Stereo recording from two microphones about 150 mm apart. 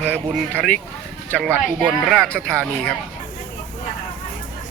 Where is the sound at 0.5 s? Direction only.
5° left (ahead or behind).